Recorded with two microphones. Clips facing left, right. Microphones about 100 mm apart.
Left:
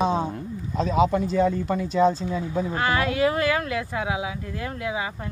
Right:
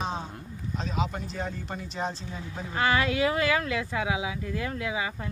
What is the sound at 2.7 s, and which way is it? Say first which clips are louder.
Speech: right 1 dB; 35° left (ahead or behind).